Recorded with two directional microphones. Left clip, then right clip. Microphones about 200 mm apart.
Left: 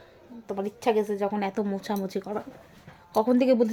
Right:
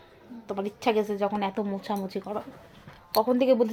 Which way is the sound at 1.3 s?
15° left (ahead or behind).